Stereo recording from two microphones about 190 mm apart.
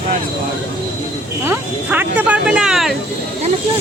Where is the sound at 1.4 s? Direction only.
10° right (ahead or behind).